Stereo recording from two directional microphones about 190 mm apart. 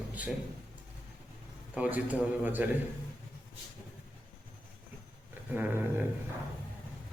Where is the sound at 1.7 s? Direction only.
10° right (ahead or behind).